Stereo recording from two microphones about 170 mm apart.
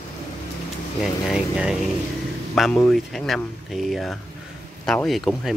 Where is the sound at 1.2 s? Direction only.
5° right (ahead or behind).